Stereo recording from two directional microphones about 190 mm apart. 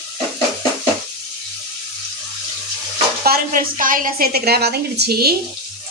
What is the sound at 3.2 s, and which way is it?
A woman's voice, 50° right (ahead or behind).